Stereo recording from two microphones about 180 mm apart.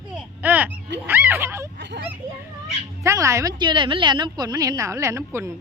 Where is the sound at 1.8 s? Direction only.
70° right (ahead or behind).